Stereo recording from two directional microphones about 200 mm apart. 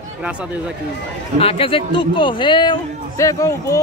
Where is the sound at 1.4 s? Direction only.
25° left (ahead or behind).